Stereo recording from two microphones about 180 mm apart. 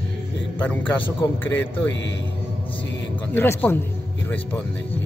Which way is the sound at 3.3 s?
10° left (ahead or behind).